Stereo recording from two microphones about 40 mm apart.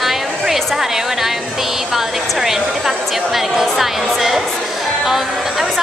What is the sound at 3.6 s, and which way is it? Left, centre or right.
A woman's voice, centre.